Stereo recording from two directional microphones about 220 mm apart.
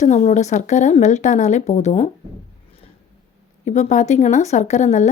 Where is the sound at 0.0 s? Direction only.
30° left (ahead or behind).